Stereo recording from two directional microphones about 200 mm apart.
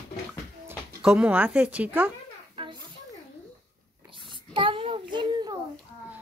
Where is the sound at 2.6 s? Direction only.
25° right (ahead or behind).